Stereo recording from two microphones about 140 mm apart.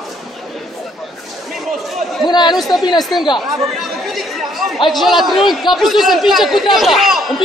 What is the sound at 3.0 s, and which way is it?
Speech, centre (ahead or behind).